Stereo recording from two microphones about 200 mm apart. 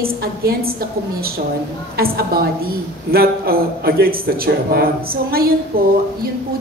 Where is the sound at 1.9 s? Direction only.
50° right (ahead or behind).